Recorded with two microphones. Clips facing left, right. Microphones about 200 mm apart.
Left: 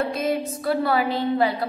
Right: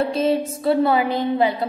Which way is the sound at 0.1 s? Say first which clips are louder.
Right 4 dB; 30° right (ahead or behind).